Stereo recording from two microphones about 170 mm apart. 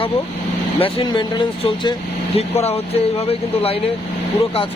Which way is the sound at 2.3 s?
35° left (ahead or behind).